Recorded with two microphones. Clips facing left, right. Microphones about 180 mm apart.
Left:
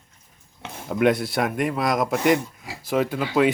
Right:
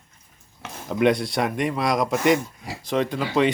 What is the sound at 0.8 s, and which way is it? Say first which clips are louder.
Speech: even; 5° left (ahead or behind).